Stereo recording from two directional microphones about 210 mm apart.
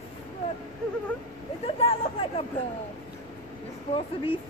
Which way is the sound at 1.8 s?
25° left (ahead or behind).